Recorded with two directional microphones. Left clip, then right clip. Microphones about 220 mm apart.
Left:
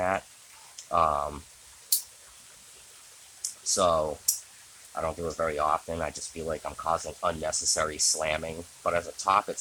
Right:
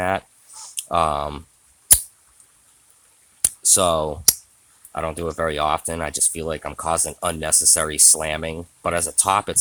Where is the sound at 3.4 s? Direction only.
50° right (ahead or behind).